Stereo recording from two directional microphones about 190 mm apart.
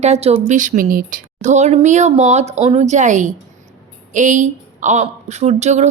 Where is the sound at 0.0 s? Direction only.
35° right (ahead or behind).